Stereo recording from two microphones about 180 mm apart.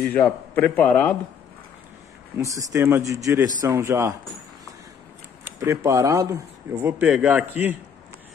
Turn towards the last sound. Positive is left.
turn(degrees=-10)  # may be behind; listen again after turning